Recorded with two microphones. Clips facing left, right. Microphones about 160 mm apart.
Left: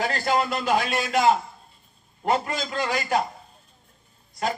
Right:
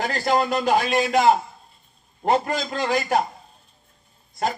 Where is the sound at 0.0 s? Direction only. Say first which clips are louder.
Right 2 dB; 40° right (ahead or behind).